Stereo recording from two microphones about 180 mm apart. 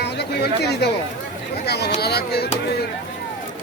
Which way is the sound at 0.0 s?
65° left (ahead or behind).